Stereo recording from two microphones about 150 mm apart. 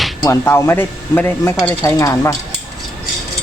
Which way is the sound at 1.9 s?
20° left (ahead or behind).